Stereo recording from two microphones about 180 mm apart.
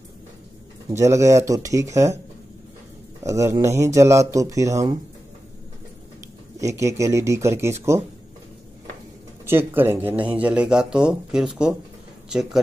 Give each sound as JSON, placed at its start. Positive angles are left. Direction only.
{"t": 0.8, "sound": "speech", "side_deg": -15}
{"t": 3.3, "sound": "speech", "side_deg": -15}
{"t": 6.6, "sound": "speech", "side_deg": -15}
{"t": 9.5, "sound": "speech", "side_deg": -10}